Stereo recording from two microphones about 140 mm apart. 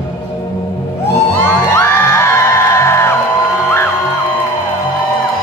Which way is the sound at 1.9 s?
20° left (ahead or behind).